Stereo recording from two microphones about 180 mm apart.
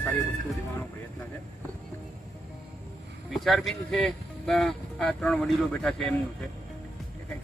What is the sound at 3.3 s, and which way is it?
Speech, centre (ahead or behind).